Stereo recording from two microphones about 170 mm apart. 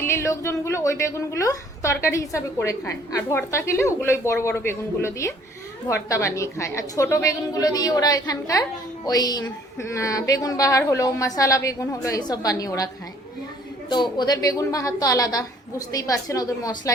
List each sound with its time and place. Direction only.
0.0 s a woman's voice: 15° left (ahead or behind)
13.9 s a woman's voice: 25° left (ahead or behind)